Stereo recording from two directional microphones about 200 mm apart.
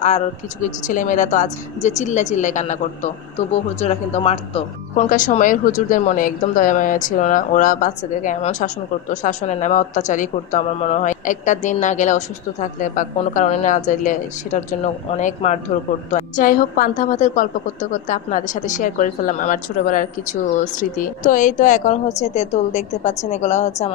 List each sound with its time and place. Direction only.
0.0 s a woman's voice: 35° left (ahead or behind)
21.2 s a woman's voice: 40° left (ahead or behind)